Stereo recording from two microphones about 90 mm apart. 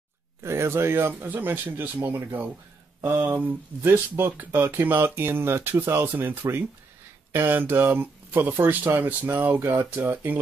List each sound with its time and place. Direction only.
0.4 s speech: 30° right (ahead or behind)